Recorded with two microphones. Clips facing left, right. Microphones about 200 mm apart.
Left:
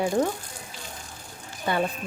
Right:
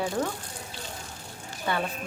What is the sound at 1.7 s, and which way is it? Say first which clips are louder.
Speech: left 3 dB; 15° left (ahead or behind).